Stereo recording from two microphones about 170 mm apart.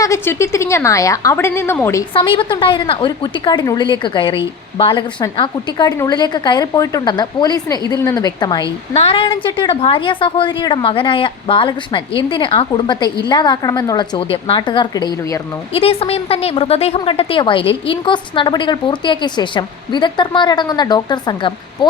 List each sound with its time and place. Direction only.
0.0 s a woman's voice: 15° left (ahead or behind)
2.1 s a woman's voice: 30° left (ahead or behind)
8.9 s a woman's voice: 35° left (ahead or behind)
15.7 s a woman's voice: 35° left (ahead or behind)